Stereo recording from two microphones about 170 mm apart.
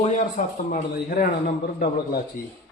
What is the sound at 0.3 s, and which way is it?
Speech, 55° left (ahead or behind).